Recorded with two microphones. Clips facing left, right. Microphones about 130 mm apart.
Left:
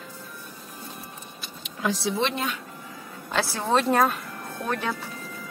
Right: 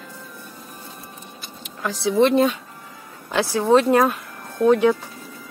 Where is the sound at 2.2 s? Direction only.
45° right (ahead or behind).